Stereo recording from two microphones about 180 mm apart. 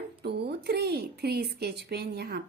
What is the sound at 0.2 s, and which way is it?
A woman's voice, 65° right (ahead or behind).